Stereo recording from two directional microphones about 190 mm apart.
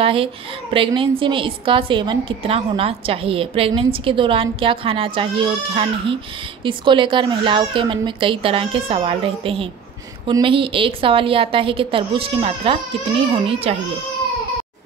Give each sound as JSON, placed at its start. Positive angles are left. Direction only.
{"t": 0.0, "sound": "a woman's voice", "side_deg": -30}